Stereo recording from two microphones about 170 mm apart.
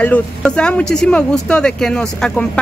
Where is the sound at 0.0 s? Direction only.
5° left (ahead or behind).